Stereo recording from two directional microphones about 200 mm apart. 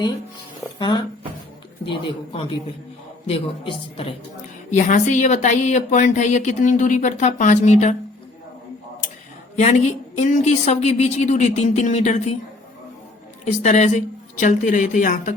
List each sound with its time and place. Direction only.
0.8 s a woman's voice: 20° left (ahead or behind); by 7.9 s 35° left (ahead or behind)
9.6 s speech: 35° left (ahead or behind)
13.4 s speech: 35° left (ahead or behind)